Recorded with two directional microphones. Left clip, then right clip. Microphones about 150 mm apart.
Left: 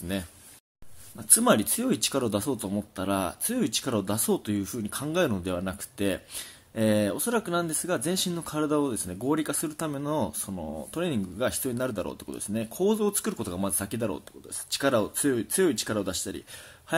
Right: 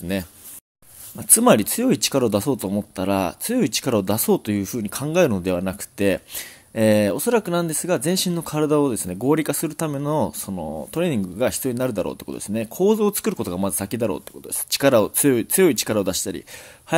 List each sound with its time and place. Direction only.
1.1 s speech: 45° right (ahead or behind)
14.7 s speech: 50° right (ahead or behind)